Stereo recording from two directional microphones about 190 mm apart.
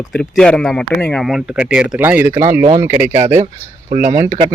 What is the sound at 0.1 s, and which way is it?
Speech, 5° left (ahead or behind).